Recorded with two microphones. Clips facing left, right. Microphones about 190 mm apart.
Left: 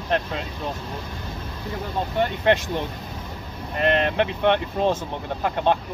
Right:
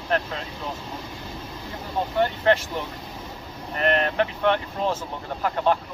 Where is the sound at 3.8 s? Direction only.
20° left (ahead or behind).